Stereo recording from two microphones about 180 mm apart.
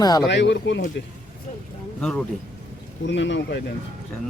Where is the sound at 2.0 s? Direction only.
5° left (ahead or behind).